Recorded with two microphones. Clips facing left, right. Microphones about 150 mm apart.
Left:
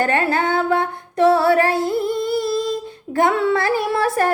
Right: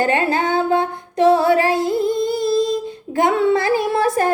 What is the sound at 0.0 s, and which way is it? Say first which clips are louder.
Music: right 1 dB; 20° right (ahead or behind).